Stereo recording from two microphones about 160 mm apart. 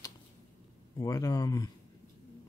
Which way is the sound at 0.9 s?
20° left (ahead or behind).